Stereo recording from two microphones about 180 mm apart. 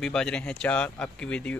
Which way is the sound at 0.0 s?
5° left (ahead or behind).